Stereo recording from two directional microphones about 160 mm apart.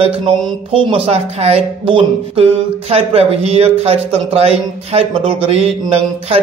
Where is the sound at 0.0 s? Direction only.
35° right (ahead or behind).